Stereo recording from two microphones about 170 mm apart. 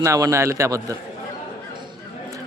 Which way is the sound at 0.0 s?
15° right (ahead or behind).